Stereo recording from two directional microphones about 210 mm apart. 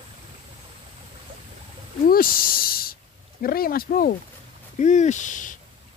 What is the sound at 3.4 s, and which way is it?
Speech, 45° left (ahead or behind).